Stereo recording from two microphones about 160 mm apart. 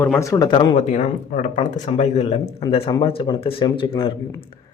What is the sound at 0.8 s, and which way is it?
A man's voice, 50° left (ahead or behind).